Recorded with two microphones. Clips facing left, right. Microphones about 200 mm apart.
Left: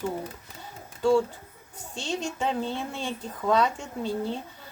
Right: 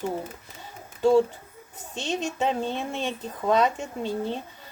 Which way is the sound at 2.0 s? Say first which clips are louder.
Right 3 dB; 20° right (ahead or behind).